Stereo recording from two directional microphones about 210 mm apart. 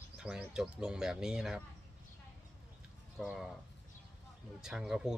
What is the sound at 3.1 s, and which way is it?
Speech, centre (ahead or behind).